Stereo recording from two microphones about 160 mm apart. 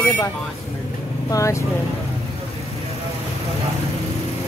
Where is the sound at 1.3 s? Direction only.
20° left (ahead or behind).